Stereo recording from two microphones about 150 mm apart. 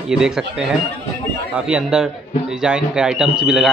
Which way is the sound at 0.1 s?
5° right (ahead or behind).